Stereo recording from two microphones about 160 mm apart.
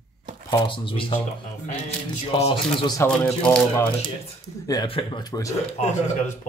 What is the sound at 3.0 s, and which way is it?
Speech, 5° left (ahead or behind).